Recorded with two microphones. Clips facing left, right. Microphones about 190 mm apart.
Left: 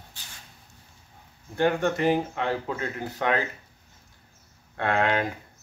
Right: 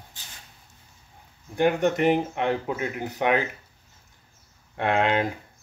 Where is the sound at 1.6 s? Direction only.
15° right (ahead or behind).